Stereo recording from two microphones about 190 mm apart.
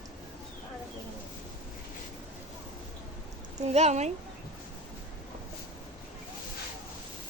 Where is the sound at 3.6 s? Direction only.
35° right (ahead or behind).